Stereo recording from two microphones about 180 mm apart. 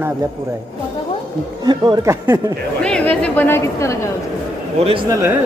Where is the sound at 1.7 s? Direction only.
20° right (ahead or behind).